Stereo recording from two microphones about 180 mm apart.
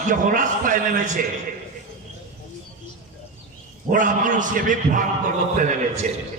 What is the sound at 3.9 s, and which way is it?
A man's voice, 45° right (ahead or behind).